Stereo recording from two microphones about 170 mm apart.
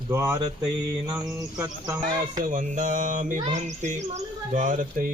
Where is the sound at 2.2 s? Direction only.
50° right (ahead or behind).